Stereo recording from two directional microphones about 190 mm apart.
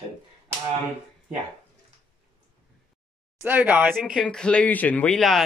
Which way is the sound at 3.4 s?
10° right (ahead or behind).